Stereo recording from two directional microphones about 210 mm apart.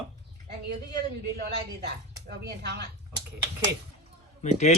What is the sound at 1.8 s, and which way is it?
Speech, 55° right (ahead or behind).